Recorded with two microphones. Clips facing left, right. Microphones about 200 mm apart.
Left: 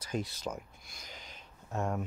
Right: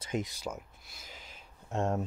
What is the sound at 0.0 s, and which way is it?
Speech, 20° right (ahead or behind).